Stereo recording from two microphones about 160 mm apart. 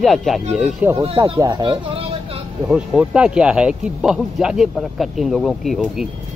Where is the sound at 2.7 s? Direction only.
5° right (ahead or behind).